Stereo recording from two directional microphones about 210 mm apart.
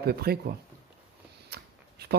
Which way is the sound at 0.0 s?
50° right (ahead or behind).